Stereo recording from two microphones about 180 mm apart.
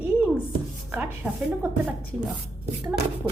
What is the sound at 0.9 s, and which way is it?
A woman's voice, 10° right (ahead or behind).